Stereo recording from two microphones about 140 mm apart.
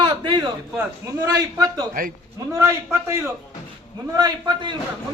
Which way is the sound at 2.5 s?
20° right (ahead or behind).